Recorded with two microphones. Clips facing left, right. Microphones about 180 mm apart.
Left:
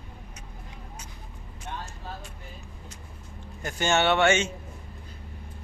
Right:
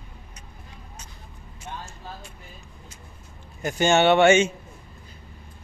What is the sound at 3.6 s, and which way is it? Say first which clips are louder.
Speech: right 5 dB; 15° right (ahead or behind).